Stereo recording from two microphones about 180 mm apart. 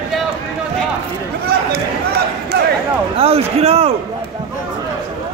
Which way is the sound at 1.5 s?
60° right (ahead or behind).